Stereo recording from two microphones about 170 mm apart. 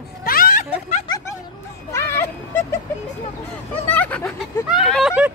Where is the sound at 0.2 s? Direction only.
55° left (ahead or behind).